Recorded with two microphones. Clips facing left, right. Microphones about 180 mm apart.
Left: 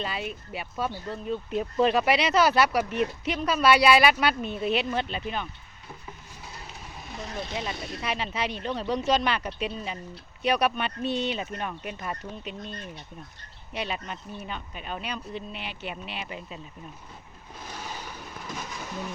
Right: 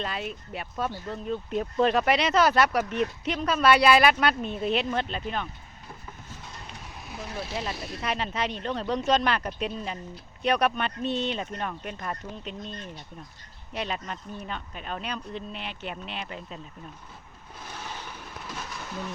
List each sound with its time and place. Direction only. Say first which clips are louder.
0.0 s speech: even; 5° left (ahead or behind)
7.1 s speech: even; 5° right (ahead or behind)
17.6 s vehicle: left 1 dB; 10° left (ahead or behind)